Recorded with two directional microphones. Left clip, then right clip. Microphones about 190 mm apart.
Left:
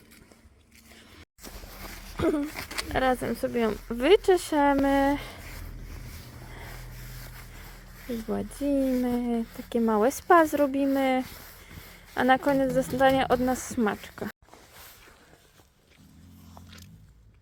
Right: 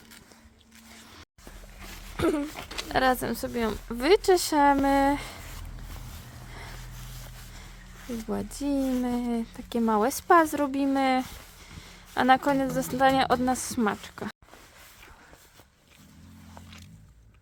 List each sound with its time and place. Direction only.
2.1 s a sound: 5° left (ahead or behind)
2.6 s speech: 50° left (ahead or behind)
2.9 s speech: 10° right (ahead or behind)
8.6 s speech: 5° right (ahead or behind)